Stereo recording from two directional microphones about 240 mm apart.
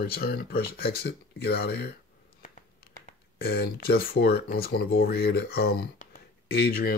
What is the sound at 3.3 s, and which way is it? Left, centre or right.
Speech, left.